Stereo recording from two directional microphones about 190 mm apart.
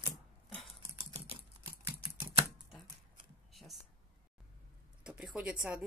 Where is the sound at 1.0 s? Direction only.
30° right (ahead or behind).